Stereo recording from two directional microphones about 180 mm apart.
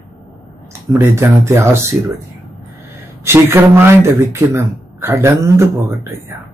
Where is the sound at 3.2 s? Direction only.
15° right (ahead or behind).